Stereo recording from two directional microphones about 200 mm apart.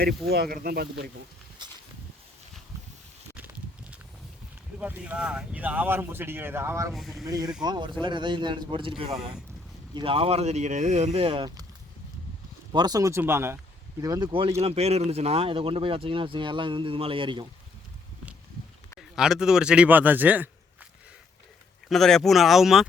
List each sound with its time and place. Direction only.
0.0 s speech: 50° right (ahead or behind)
4.8 s speech: 5° right (ahead or behind)
6.9 s speech: centre (ahead or behind)
7.3 s speech: 20° right (ahead or behind)
12.7 s speech: 20° right (ahead or behind)
18.9 s speech: 5° right (ahead or behind)
21.8 s speech: centre (ahead or behind)